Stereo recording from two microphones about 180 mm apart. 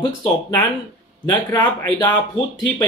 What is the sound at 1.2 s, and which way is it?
Speech, 25° left (ahead or behind).